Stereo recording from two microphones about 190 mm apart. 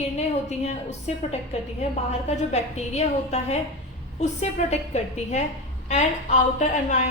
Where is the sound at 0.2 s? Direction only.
35° left (ahead or behind).